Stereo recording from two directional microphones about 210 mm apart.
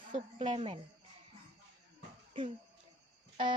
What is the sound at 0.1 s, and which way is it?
Speech, 30° right (ahead or behind).